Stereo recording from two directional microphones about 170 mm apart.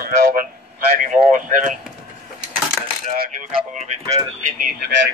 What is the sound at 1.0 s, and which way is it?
Speech, 50° right (ahead or behind).